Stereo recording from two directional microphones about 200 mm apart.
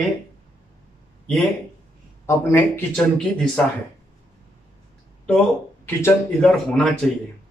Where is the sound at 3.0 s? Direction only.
5° left (ahead or behind).